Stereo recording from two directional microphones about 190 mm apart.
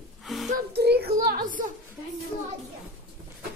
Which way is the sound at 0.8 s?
60° right (ahead or behind).